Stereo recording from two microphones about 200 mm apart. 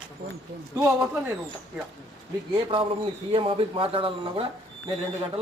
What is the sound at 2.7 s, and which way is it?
Speech, 25° right (ahead or behind).